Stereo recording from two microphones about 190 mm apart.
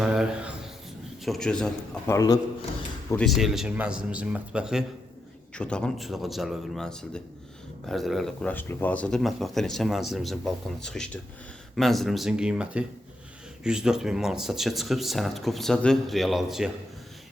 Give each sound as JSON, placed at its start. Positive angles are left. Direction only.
{"t": 0.0, "sound": "a sound", "side_deg": -5}
{"t": 1.2, "sound": "a man's voice", "side_deg": 0}
{"t": 2.0, "sound": "a man's voice", "side_deg": 20}
{"t": 3.1, "sound": "speech", "side_deg": 5}